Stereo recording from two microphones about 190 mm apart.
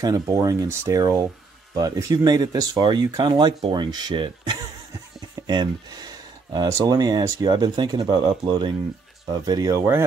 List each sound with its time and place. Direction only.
0.0 s speech: 20° right (ahead or behind)